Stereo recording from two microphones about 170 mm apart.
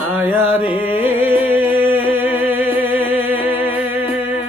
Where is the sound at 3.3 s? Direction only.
30° left (ahead or behind).